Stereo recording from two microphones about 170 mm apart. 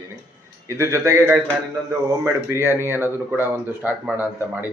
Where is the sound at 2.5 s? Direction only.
15° right (ahead or behind).